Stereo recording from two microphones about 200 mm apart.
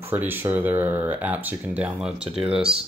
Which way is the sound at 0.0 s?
10° right (ahead or behind).